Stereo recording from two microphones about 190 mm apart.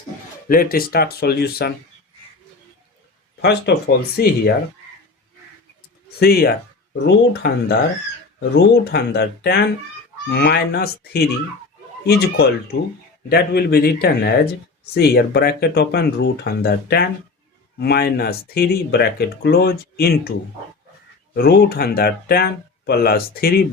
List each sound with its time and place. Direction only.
0.4 s speech: 50° left (ahead or behind)
3.4 s speech: 60° left (ahead or behind)
6.1 s speech: 55° left (ahead or behind)
21.3 s speech: 55° left (ahead or behind)